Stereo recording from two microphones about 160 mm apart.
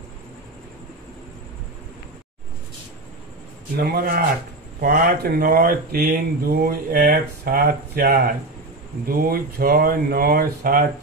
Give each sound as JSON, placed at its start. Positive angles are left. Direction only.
{"t": 3.7, "sound": "speech", "side_deg": -75}